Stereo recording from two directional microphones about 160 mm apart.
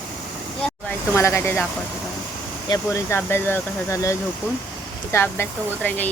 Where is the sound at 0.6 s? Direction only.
5° left (ahead or behind).